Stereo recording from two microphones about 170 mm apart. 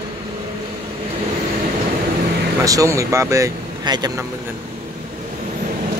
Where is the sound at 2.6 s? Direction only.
20° right (ahead or behind).